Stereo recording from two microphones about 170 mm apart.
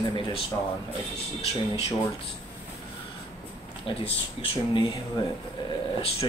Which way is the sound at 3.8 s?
30° left (ahead or behind).